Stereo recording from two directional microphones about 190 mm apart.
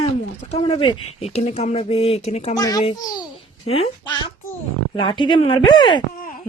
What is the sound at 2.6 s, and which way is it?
A child's voice, 20° left (ahead or behind).